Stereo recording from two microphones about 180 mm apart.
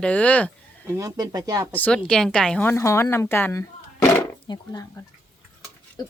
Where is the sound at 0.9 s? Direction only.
20° right (ahead or behind).